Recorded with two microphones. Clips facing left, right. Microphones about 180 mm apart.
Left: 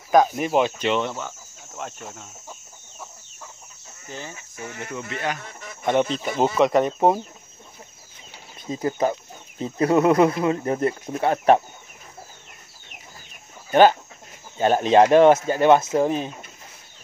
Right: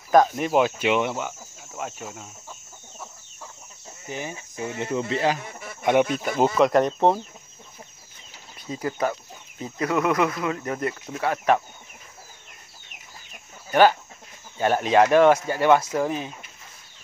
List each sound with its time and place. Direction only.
0.1 s speech: centre (ahead or behind)
4.1 s speech: 15° right (ahead or behind)
5.4 s a sound: 5° right (ahead or behind)
5.9 s speech: 10° right (ahead or behind); by 7.2 s 10° left (ahead or behind)
8.6 s speech: 25° left (ahead or behind)
13.7 s speech: 20° left (ahead or behind)